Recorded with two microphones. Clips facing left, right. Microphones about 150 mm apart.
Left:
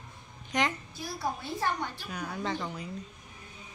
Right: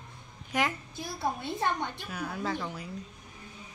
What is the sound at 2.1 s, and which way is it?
Speech, 5° right (ahead or behind).